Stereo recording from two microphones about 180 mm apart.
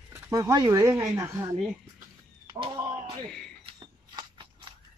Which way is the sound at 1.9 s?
20° right (ahead or behind).